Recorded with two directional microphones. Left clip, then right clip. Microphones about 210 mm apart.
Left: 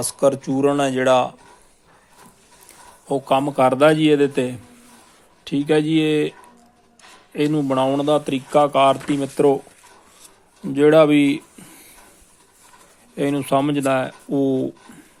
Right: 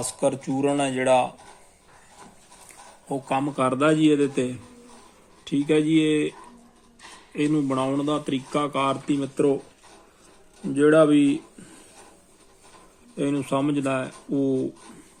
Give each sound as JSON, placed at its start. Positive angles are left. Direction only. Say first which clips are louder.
{"t": 0.0, "sound": "speech", "louder": "left 6 dB", "side_deg": 15}
{"t": 3.1, "sound": "a man's voice", "louder": "left 7 dB", "side_deg": 15}
{"t": 7.3, "sound": "a man's voice", "louder": "left 5 dB", "side_deg": 20}
{"t": 10.8, "sound": "a man's voice", "louder": "left 4 dB", "side_deg": 25}
{"t": 13.1, "sound": "a man's voice", "louder": "left 6 dB", "side_deg": 25}